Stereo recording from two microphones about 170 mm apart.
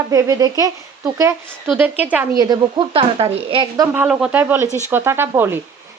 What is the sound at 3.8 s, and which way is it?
Speech, 10° right (ahead or behind).